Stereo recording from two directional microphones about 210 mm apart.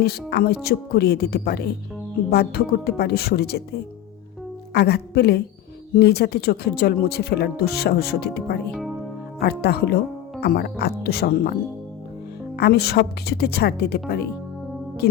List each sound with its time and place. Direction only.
0.0 s speech: 50° left (ahead or behind)
4.7 s speech: 50° left (ahead or behind)
12.5 s speech: 50° left (ahead or behind)